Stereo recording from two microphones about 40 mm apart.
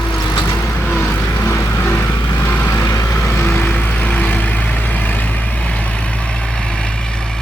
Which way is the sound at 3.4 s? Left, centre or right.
Left.